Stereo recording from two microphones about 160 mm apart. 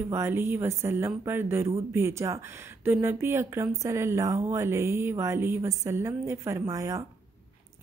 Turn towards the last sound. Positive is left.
turn(degrees=-20)  # may be behind; listen again after turning